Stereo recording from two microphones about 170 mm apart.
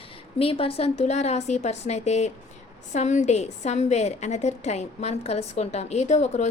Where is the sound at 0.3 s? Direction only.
35° left (ahead or behind).